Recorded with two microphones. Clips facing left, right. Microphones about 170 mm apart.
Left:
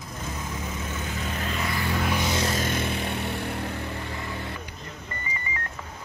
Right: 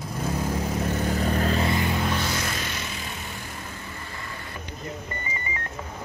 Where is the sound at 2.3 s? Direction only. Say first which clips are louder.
Left 3 dB; 25° left (ahead or behind).